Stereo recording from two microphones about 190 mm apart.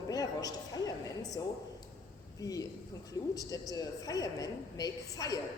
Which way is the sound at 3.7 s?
20° left (ahead or behind).